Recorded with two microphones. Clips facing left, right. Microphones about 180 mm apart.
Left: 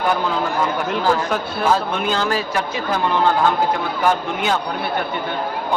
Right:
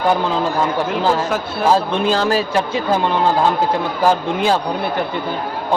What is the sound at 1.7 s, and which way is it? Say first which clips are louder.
A man's voice: right 5 dB; 30° right (ahead or behind).